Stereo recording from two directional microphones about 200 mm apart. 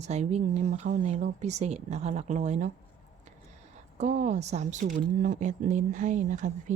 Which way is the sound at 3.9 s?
35° right (ahead or behind).